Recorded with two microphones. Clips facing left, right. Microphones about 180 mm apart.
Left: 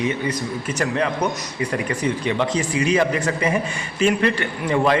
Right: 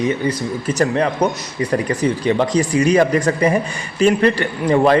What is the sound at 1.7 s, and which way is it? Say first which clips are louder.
A man's voice: right 6 dB; 35° right (ahead or behind).